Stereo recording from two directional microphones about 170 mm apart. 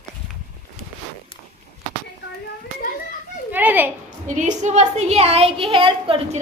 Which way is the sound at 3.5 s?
10° right (ahead or behind).